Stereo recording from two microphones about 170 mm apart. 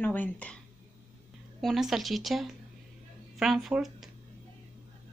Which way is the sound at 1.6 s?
Centre (ahead or behind).